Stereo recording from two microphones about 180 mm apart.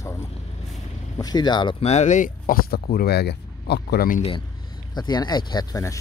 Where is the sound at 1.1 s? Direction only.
20° left (ahead or behind); by 4.2 s 60° left (ahead or behind).